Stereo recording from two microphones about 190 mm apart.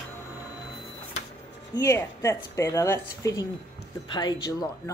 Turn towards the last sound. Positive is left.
turn(degrees=20)  # may be behind; listen again after turning